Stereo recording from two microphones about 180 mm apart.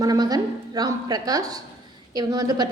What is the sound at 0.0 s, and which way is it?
A woman's voice, 20° right (ahead or behind).